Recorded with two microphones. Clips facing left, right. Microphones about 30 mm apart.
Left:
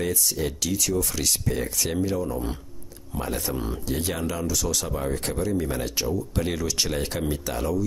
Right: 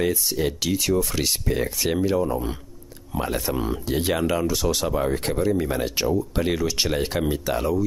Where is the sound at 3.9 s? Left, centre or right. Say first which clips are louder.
Right 6 dB; right.